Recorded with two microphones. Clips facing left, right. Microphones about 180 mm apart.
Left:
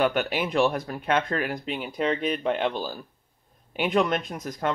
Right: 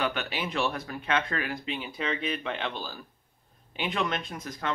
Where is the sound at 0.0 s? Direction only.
45° left (ahead or behind).